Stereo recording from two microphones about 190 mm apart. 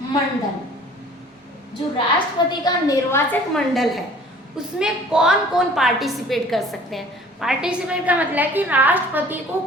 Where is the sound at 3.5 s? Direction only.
Centre (ahead or behind).